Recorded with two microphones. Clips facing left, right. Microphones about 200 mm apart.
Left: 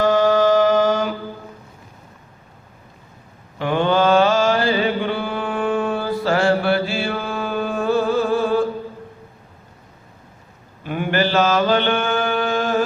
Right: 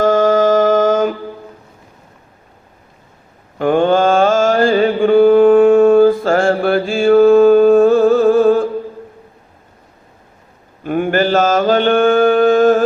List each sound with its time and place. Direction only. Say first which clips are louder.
0.0 s mantra: right 4 dB; 45° right (ahead or behind)
3.6 s mantra: right 6 dB; 50° right (ahead or behind)
10.8 s mantra: right 6 dB; 45° right (ahead or behind)